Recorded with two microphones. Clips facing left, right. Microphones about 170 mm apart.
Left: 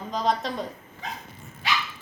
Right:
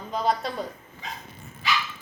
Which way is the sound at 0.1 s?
5° right (ahead or behind).